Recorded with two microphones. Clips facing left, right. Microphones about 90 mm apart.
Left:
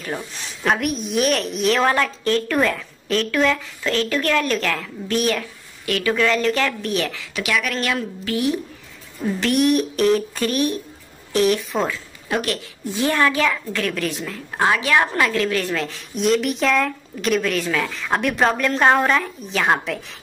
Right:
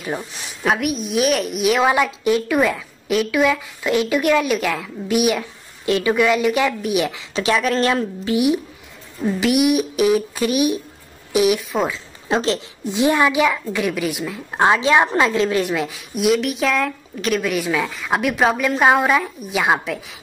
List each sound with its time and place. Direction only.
0.0 s a woman's voice: 10° right (ahead or behind); by 8.0 s 30° right (ahead or behind)
8.3 s a woman's voice: 15° right (ahead or behind)
12.3 s a woman's voice: 25° right (ahead or behind); by 20.2 s 5° right (ahead or behind)